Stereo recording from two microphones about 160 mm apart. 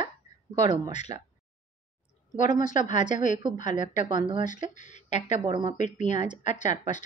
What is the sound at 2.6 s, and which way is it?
Speech, 55° left (ahead or behind).